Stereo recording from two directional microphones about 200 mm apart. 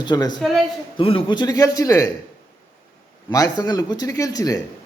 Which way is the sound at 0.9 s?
25° left (ahead or behind).